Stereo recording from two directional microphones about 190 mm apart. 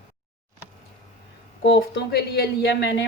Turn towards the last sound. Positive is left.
turn(degrees=65)  # may be behind; listen again after turning